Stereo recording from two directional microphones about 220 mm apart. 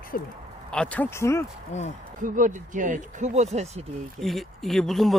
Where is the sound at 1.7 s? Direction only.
30° left (ahead or behind).